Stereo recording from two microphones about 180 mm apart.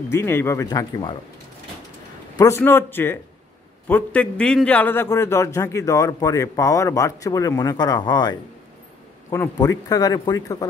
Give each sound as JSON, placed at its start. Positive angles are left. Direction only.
{"t": 0.1, "sound": "a man's voice", "side_deg": 15}
{"t": 2.3, "sound": "a man's voice", "side_deg": 15}